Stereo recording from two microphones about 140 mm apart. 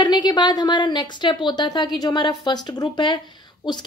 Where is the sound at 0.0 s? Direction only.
30° left (ahead or behind).